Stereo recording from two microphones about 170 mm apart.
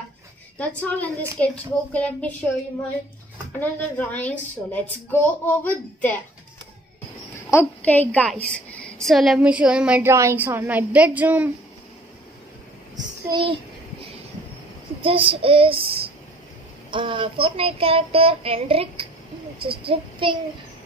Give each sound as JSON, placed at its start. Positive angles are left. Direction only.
{"t": 0.6, "sound": "a woman's voice", "side_deg": 10}
{"t": 3.5, "sound": "a woman's voice", "side_deg": 10}
{"t": 7.5, "sound": "a woman's voice", "side_deg": 10}
{"t": 12.9, "sound": "a child's voice", "side_deg": -25}
{"t": 15.0, "sound": "child singing", "side_deg": -30}